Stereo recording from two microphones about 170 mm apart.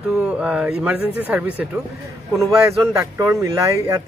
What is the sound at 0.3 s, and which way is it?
Speech, 5° right (ahead or behind).